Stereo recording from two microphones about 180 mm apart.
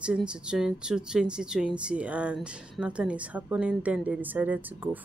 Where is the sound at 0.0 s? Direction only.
5° right (ahead or behind).